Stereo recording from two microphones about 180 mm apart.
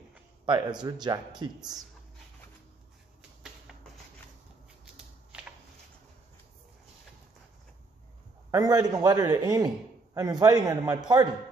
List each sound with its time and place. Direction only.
0.5 s a man's voice: 25° right (ahead or behind)
3.2 s a sound: 5° right (ahead or behind)
8.5 s a man's voice: 20° right (ahead or behind)